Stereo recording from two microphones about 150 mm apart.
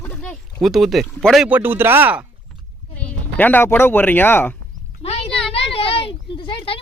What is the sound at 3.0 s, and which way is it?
Speech, 10° left (ahead or behind).